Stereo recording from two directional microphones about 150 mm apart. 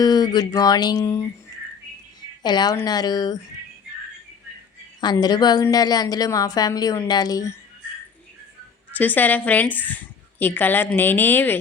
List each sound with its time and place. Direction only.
0.0 s a woman's voice: 25° left (ahead or behind)
2.4 s a woman's voice: 30° left (ahead or behind)
4.9 s a woman's voice: 30° left (ahead or behind)
8.9 s a woman's voice: 10° left (ahead or behind)